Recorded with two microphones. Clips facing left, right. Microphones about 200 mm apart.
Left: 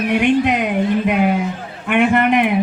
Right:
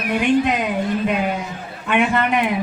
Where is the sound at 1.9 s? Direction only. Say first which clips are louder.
Left 4 dB; 55° left (ahead or behind).